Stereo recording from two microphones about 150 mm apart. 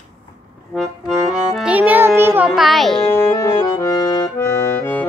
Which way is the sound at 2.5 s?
Centre (ahead or behind).